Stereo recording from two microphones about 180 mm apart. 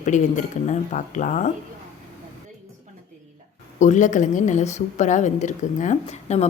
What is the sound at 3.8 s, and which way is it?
A woman's voice, 40° left (ahead or behind).